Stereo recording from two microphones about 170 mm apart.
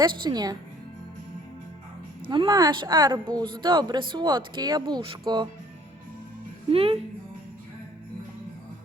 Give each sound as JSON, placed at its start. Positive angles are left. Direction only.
{"t": 0.0, "sound": "a woman's voice", "side_deg": -25}
{"t": 2.2, "sound": "a woman's voice", "side_deg": -30}
{"t": 6.7, "sound": "speech", "side_deg": -35}